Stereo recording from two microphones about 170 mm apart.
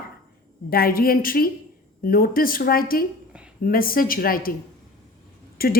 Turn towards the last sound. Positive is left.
turn(degrees=60)  # may be behind; listen again after turning